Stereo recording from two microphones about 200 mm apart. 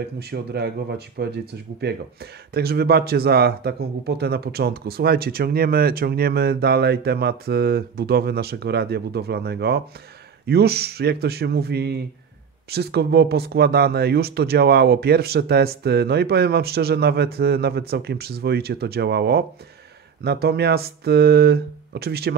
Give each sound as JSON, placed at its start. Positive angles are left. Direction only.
{"t": 0.2, "sound": "speech", "side_deg": -55}